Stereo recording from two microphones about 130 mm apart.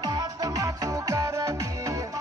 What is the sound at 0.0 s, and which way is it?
Music, 30° right (ahead or behind).